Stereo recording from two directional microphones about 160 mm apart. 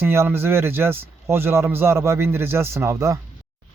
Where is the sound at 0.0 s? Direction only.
15° right (ahead or behind).